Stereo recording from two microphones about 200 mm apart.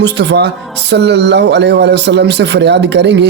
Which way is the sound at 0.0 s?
60° right (ahead or behind).